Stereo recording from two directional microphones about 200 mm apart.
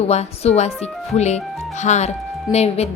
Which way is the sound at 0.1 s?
35° left (ahead or behind).